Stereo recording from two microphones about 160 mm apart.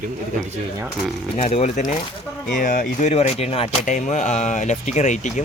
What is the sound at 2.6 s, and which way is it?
Speech, 60° left (ahead or behind).